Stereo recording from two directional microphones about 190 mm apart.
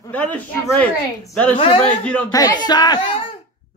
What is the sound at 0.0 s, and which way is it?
Speech, 10° left (ahead or behind).